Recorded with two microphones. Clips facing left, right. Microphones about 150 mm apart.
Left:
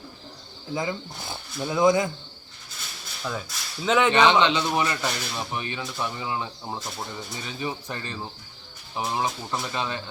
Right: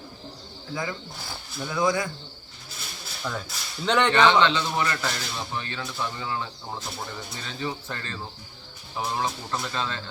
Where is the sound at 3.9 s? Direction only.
5° left (ahead or behind).